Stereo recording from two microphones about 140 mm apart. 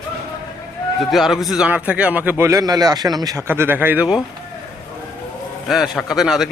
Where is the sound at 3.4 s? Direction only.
15° right (ahead or behind).